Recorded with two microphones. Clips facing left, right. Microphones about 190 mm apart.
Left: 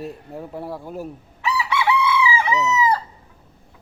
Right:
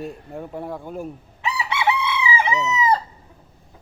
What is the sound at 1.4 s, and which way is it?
Chicken, 25° right (ahead or behind).